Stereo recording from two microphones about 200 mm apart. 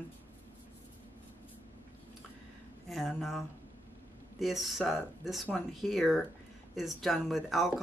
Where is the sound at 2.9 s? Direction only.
Centre (ahead or behind).